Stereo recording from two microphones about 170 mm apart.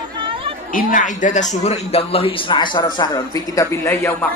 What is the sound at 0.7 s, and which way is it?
A woman's voice, 55° left (ahead or behind).